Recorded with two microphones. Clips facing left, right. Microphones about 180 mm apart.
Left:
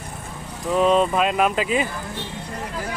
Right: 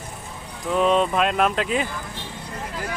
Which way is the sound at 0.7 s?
Centre (ahead or behind).